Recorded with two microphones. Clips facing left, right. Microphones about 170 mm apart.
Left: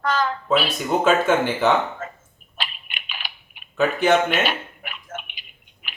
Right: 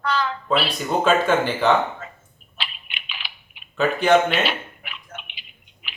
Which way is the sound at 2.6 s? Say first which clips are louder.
Left 2 dB; 45° left (ahead or behind).